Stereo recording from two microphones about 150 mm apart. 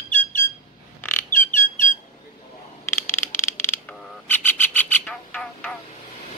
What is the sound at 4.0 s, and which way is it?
Bird, 10° left (ahead or behind).